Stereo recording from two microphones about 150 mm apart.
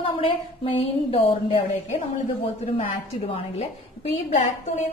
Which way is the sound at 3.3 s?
45° left (ahead or behind).